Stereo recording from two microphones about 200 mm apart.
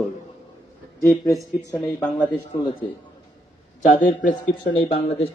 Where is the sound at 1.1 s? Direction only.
Centre (ahead or behind).